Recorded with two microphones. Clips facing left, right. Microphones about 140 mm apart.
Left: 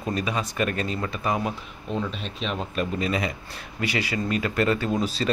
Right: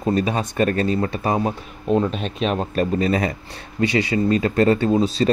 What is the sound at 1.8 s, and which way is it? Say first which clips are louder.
Speech: right 10 dB; 45° right (ahead or behind).